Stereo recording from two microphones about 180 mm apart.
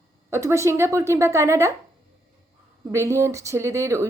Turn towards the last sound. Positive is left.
turn(degrees=-15)  # may be behind; listen again after turning